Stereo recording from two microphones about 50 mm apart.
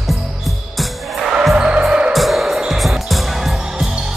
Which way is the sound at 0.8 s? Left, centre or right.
Centre.